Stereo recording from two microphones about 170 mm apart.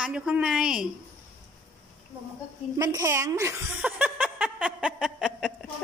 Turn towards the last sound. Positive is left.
turn(degrees=-5)  # may be behind; listen again after turning